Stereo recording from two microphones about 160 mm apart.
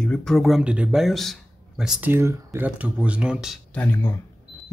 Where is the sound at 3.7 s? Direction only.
10° left (ahead or behind).